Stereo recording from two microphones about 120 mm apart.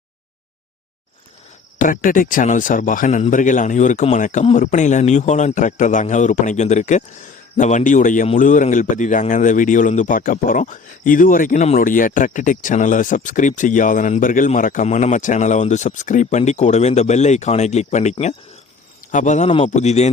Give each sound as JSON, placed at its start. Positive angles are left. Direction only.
{"t": 1.8, "sound": "a man's voice", "side_deg": 90}
{"t": 19.1, "sound": "a man's voice", "side_deg": 90}
{"t": 19.6, "sound": "a man's voice", "side_deg": 75}